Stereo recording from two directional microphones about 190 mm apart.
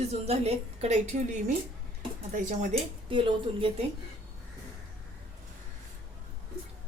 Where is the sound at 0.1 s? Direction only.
35° right (ahead or behind).